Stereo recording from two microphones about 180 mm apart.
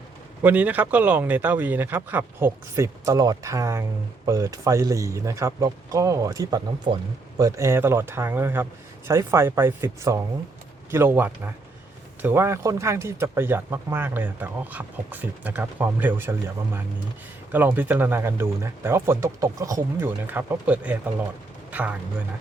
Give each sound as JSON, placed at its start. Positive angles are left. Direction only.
{"t": 0.4, "sound": "speech", "side_deg": -10}
{"t": 17.5, "sound": "speech", "side_deg": -10}